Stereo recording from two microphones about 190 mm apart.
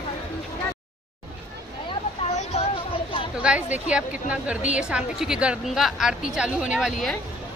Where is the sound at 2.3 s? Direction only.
35° left (ahead or behind).